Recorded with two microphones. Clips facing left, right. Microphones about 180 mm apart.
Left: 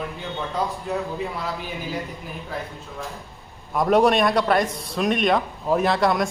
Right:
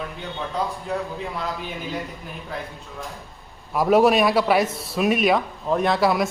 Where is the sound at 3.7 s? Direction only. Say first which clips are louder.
Right 1 dB; 5° right (ahead or behind).